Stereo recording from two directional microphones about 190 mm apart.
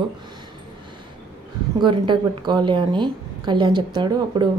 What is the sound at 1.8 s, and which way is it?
A woman's voice, 25° right (ahead or behind).